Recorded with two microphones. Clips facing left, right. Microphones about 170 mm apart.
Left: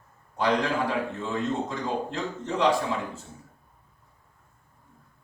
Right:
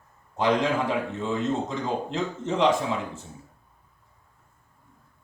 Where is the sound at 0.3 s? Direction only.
20° right (ahead or behind).